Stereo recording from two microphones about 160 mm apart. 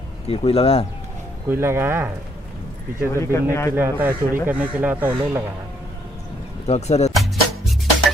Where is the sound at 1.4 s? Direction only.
15° right (ahead or behind).